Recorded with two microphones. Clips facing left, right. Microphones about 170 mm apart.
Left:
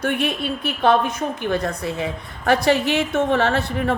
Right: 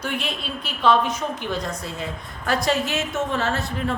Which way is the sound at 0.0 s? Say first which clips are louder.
Left 6 dB; 55° left (ahead or behind).